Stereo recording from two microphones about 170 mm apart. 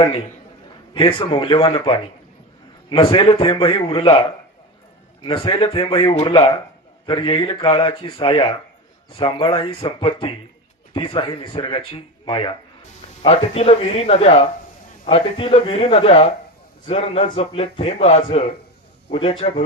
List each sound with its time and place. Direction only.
0.9 s speech: 30° left (ahead or behind)
5.2 s speech: 30° left (ahead or behind)